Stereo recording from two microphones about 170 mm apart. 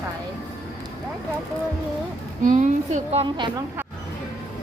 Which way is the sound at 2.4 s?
50° right (ahead or behind).